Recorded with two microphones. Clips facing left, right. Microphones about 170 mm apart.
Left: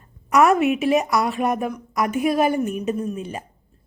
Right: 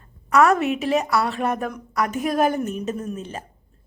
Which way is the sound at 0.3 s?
15° left (ahead or behind).